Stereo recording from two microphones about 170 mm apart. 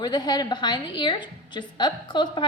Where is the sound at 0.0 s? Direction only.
25° left (ahead or behind).